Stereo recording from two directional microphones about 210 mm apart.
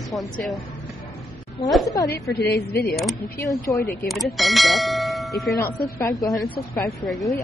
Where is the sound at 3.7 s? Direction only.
15° left (ahead or behind).